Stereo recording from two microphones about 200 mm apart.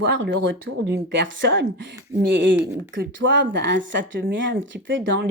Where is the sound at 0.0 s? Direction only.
60° right (ahead or behind).